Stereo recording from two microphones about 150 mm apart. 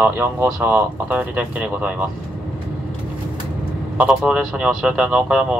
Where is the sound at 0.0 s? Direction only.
10° right (ahead or behind).